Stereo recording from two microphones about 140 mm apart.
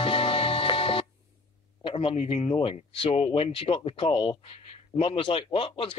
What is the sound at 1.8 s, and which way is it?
Speech, 40° left (ahead or behind).